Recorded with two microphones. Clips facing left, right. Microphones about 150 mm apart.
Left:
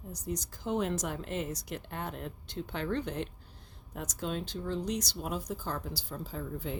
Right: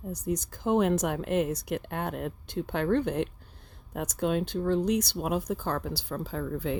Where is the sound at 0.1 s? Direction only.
55° right (ahead or behind).